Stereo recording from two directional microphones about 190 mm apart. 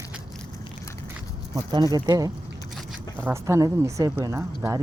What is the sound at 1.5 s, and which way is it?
Speech, 20° right (ahead or behind).